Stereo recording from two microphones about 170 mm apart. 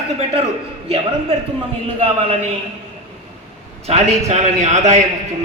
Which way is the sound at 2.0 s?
30° right (ahead or behind).